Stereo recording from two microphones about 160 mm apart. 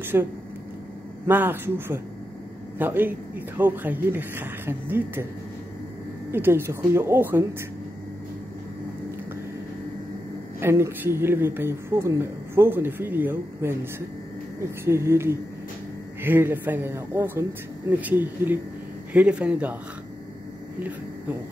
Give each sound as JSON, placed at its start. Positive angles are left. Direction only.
{"t": 0.0, "sound": "speech", "side_deg": -15}
{"t": 6.3, "sound": "speech", "side_deg": -15}
{"t": 10.6, "sound": "speech", "side_deg": -15}